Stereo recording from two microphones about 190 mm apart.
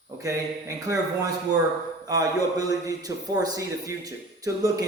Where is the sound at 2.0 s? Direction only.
20° right (ahead or behind).